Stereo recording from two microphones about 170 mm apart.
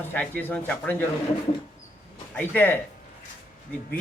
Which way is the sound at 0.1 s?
10° left (ahead or behind).